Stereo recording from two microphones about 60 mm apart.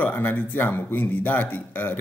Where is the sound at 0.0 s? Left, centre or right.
Left.